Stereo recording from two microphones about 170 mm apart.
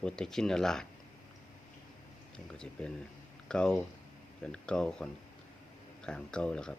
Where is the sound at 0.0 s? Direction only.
5° left (ahead or behind).